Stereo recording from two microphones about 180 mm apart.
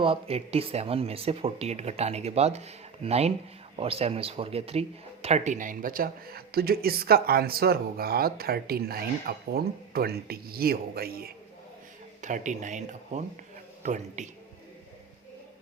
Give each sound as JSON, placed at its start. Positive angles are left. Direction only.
{"t": 0.0, "sound": "speech", "side_deg": -30}
{"t": 12.2, "sound": "speech", "side_deg": -45}